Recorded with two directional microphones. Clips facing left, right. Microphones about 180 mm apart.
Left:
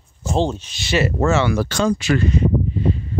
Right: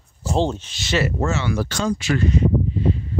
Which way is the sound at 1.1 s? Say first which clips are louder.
Left 5 dB; 80° left.